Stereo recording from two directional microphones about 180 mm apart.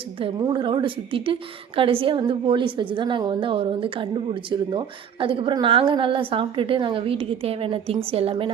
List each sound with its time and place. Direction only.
0.2 s a woman's voice: 25° right (ahead or behind)